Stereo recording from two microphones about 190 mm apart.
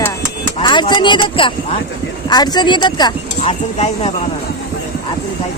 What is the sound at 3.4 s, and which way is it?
Speech, 35° left (ahead or behind).